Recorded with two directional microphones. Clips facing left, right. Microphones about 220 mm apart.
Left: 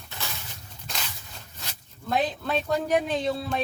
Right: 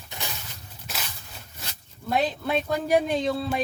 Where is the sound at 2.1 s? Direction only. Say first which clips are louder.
Right 1 dB; 10° right (ahead or behind).